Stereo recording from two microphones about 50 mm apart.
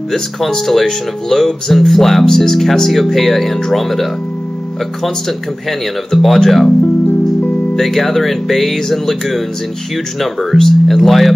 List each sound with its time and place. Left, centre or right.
0.1 s speech: centre
5.7 s speech: centre
6.8 s music: left
7.7 s speech: centre